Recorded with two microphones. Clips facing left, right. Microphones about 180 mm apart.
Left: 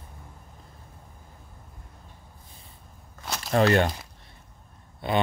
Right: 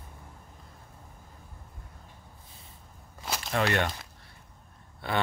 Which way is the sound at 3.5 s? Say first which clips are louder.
Left 7 dB; 35° left (ahead or behind).